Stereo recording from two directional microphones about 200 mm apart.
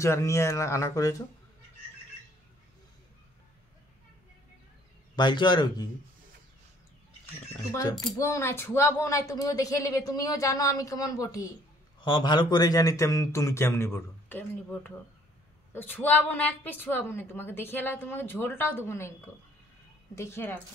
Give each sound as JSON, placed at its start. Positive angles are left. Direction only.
{"t": 0.0, "sound": "a woman's voice", "side_deg": 15}
{"t": 5.1, "sound": "a man's voice", "side_deg": 20}
{"t": 7.7, "sound": "a man's voice", "side_deg": 20}
{"t": 20.2, "sound": "a woman's voice", "side_deg": 10}